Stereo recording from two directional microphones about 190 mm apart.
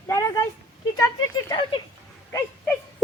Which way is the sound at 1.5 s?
25° left (ahead or behind).